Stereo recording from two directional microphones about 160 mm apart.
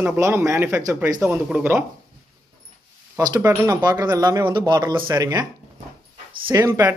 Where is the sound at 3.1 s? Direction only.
20° right (ahead or behind).